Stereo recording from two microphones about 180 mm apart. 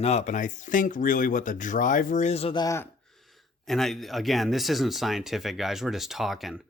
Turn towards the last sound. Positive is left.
turn(degrees=0)  # may be behind; listen again after turning